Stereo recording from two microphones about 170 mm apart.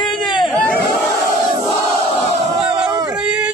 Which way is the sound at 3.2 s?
5° right (ahead or behind).